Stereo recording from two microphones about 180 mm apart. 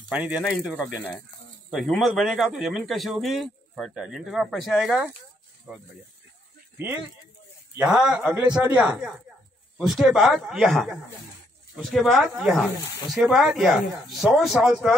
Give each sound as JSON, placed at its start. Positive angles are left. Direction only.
{"t": 0.1, "sound": "speech", "side_deg": -5}
{"t": 6.8, "sound": "speech", "side_deg": -10}
{"t": 12.7, "sound": "speech", "side_deg": 20}
{"t": 13.1, "sound": "speech", "side_deg": 0}